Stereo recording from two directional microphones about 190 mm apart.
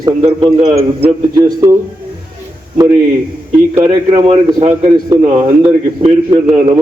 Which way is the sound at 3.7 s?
35° right (ahead or behind).